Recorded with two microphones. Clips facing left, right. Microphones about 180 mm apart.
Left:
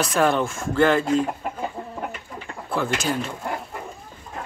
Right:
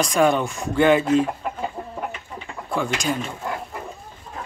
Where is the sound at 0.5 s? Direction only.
15° right (ahead or behind).